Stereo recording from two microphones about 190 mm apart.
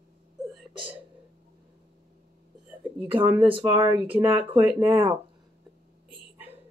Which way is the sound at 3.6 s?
10° right (ahead or behind).